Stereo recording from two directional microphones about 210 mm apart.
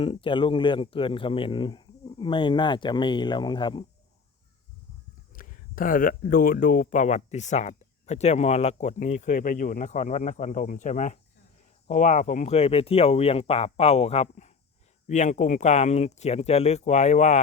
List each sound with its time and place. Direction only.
0.0 s speech: 25° left (ahead or behind)
5.3 s speech: 40° left (ahead or behind)